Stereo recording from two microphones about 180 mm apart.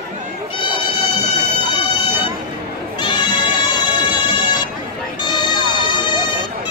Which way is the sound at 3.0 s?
25° left (ahead or behind).